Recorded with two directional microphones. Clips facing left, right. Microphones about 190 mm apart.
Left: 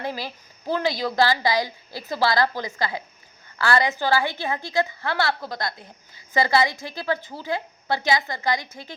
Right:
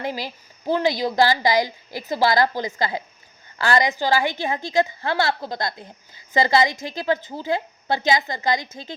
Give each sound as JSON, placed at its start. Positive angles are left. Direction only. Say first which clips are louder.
{"t": 0.7, "sound": "a woman's voice", "louder": "right 3 dB", "side_deg": -20}